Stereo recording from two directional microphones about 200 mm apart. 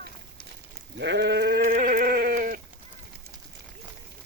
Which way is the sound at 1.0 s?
60° right (ahead or behind).